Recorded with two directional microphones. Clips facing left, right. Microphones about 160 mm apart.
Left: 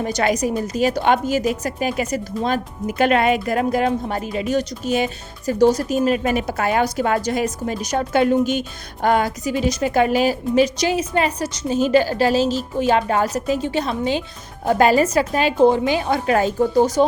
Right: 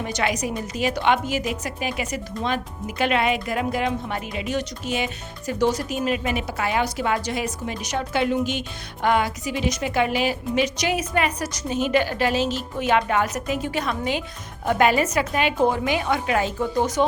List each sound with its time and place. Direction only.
0.0 s speech: 40° left (ahead or behind)